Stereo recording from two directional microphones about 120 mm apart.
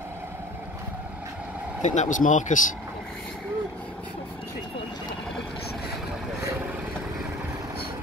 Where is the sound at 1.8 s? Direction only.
85° left.